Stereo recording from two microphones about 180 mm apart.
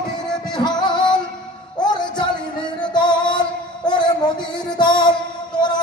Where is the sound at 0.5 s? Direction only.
25° left (ahead or behind).